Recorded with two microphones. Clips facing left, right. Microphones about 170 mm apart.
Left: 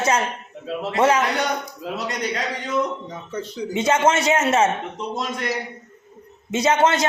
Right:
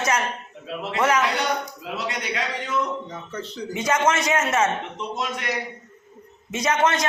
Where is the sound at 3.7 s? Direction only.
25° left (ahead or behind).